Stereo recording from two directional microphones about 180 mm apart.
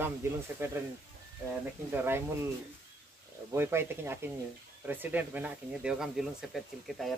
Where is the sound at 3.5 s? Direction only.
10° right (ahead or behind).